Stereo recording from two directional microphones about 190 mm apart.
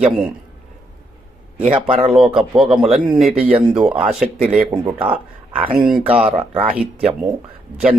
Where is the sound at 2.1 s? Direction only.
5° right (ahead or behind).